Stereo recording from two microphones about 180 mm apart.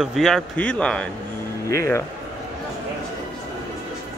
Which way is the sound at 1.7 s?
15° left (ahead or behind).